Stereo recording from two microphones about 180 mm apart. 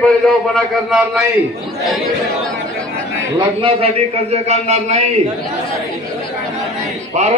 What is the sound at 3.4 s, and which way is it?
A man's voice, 30° right (ahead or behind).